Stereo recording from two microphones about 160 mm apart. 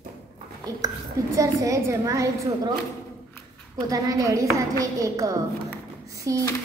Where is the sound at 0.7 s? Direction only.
25° right (ahead or behind).